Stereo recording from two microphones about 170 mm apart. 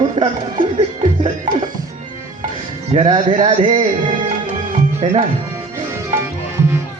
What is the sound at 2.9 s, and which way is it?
A man's voice, 40° right (ahead or behind).